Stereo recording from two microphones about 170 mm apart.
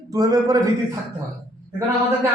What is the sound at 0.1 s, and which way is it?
Speech, 20° right (ahead or behind).